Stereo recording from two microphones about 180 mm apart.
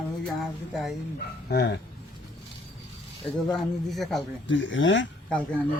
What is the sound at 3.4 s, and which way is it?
Speech, centre (ahead or behind).